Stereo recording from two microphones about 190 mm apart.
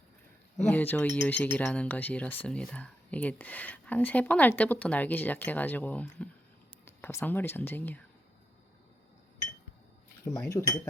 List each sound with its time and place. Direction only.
0.5 s speech: 10° left (ahead or behind)
10.3 s speech: 15° left (ahead or behind)